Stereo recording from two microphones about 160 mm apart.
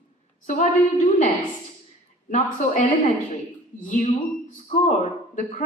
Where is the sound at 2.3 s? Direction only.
55° left (ahead or behind).